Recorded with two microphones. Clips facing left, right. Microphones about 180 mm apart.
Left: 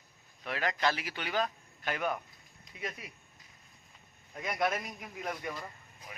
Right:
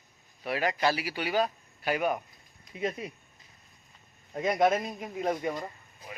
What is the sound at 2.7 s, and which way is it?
Speech, 25° right (ahead or behind).